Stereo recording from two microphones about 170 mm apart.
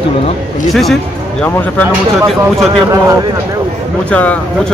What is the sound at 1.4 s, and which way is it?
Speech, 10° left (ahead or behind).